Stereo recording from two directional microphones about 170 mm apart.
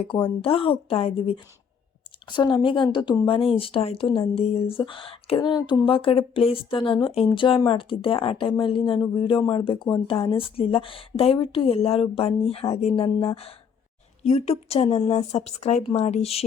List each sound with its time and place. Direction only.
0.4 s speech: 30° left (ahead or behind)